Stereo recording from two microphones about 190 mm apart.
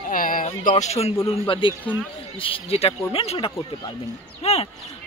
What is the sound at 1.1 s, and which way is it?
Speech, 15° left (ahead or behind).